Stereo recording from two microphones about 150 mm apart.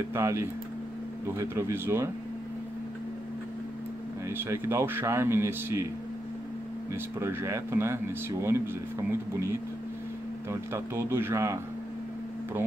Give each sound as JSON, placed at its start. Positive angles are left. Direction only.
{"t": 0.1, "sound": "speech", "side_deg": -20}
{"t": 4.3, "sound": "speech", "side_deg": -15}
{"t": 6.9, "sound": "speech", "side_deg": -20}